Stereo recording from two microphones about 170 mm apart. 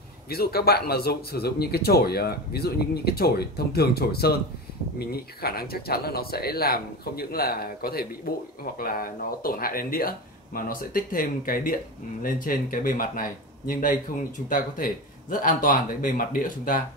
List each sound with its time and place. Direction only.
0.3 s speech: 65° left (ahead or behind)